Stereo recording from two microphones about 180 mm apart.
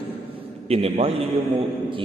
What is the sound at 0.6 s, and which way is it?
Speech, 35° right (ahead or behind).